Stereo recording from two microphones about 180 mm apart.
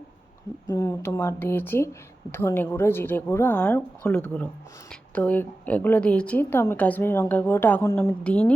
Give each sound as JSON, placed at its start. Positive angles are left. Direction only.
{"t": 0.7, "sound": "speech", "side_deg": 15}